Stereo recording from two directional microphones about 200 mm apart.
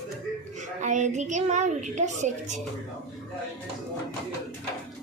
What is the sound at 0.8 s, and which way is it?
A woman's voice, 35° right (ahead or behind).